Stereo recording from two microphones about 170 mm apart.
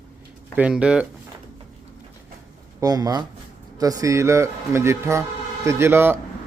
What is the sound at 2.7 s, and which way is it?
Speech, 20° right (ahead or behind).